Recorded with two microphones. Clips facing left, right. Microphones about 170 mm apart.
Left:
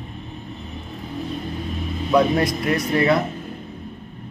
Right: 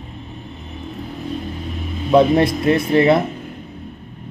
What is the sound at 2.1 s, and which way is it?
Speech, 25° right (ahead or behind).